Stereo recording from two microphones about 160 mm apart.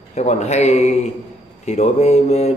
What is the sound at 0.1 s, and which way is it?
Speech, 45° left (ahead or behind).